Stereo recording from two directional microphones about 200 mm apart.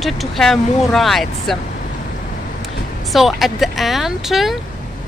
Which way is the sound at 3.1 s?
Centre (ahead or behind).